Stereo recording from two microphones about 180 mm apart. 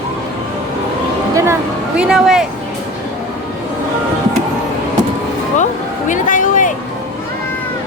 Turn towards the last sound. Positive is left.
turn(degrees=45)  # may be behind; listen again after turning